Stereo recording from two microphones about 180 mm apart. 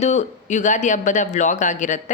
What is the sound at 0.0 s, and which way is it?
Speech, 40° left (ahead or behind).